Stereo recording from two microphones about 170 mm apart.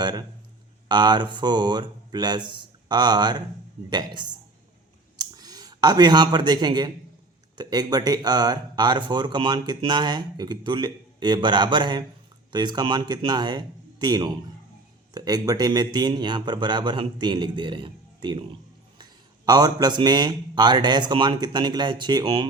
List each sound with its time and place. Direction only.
0.0 s a man's voice: 25° right (ahead or behind)
19.5 s speech: 25° right (ahead or behind)